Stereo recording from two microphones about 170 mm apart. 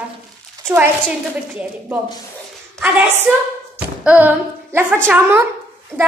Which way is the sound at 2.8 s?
10° right (ahead or behind).